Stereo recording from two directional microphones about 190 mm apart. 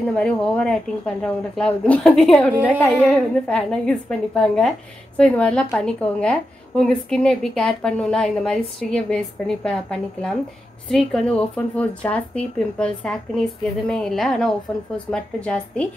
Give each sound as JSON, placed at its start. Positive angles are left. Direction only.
{"t": 0.0, "sound": "a woman's voice", "side_deg": 5}